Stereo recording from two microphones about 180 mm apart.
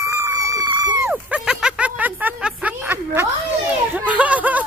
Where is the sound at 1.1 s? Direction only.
5° right (ahead or behind).